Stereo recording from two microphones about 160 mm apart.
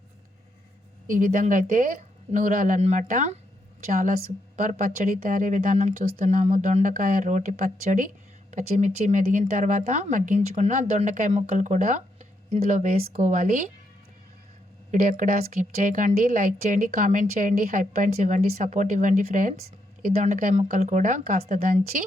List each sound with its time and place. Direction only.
1.0 s speech: 55° right (ahead or behind)
4.5 s a woman's voice: 50° right (ahead or behind)
14.9 s a woman's voice: 60° right (ahead or behind)